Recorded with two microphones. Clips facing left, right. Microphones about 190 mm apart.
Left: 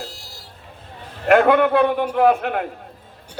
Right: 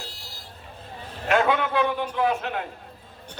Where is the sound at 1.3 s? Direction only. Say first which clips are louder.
Left 8 dB; 60° left (ahead or behind).